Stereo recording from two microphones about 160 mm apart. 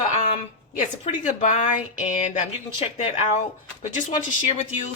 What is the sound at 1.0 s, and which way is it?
Speech, 50° left (ahead or behind).